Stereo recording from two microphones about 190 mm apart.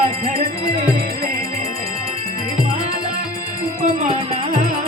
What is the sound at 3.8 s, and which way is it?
Music, 45° right (ahead or behind).